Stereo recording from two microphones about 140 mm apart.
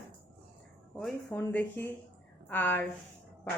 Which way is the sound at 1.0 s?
10° left (ahead or behind).